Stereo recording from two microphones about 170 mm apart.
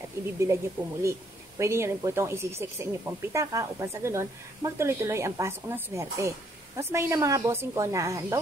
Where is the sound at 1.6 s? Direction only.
15° right (ahead or behind).